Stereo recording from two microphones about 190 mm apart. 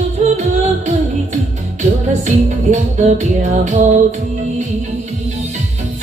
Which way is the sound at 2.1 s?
40° right (ahead or behind).